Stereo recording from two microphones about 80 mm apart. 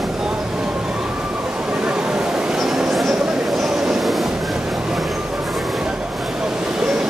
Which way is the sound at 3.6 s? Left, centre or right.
Centre.